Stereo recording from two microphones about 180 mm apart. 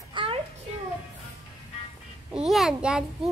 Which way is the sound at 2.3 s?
Centre (ahead or behind).